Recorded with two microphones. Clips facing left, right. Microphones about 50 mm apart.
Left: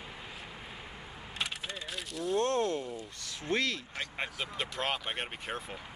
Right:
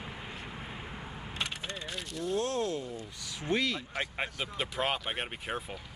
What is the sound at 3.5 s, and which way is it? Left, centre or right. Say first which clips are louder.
Speech: right 1 dB; centre.